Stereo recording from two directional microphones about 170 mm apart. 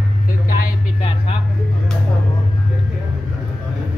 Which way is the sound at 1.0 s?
35° left (ahead or behind).